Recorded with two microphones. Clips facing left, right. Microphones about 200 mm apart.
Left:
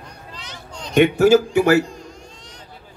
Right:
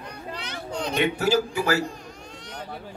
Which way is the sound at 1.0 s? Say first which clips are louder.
Left 11 dB; 50° left (ahead or behind).